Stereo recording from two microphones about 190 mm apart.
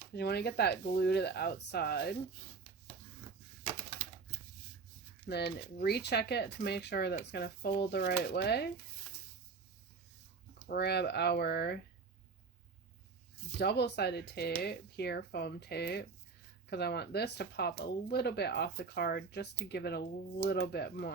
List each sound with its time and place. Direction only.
0.2 s speech: 60° left (ahead or behind)
5.3 s speech: 55° left (ahead or behind)
10.7 s speech: 60° left (ahead or behind)
13.6 s speech: 60° left (ahead or behind)